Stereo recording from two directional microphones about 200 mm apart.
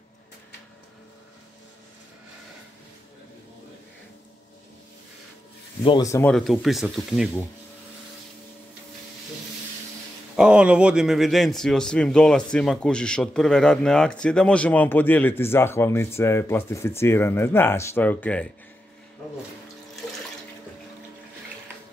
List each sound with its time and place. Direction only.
5.9 s speech: 20° left (ahead or behind)
6.3 s speech: centre (ahead or behind)
10.3 s speech: 5° right (ahead or behind)